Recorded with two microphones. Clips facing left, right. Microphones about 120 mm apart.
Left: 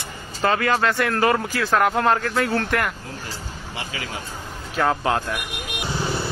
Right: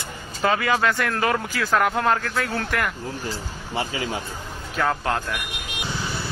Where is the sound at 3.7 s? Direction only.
25° right (ahead or behind).